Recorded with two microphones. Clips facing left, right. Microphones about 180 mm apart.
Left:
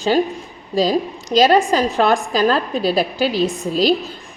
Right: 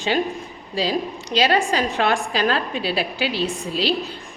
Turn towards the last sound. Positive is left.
turn(degrees=45)  # may be behind; listen again after turning